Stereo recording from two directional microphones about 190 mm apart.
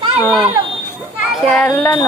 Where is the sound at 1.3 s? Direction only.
5° left (ahead or behind).